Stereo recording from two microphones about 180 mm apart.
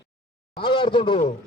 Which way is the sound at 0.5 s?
25° left (ahead or behind).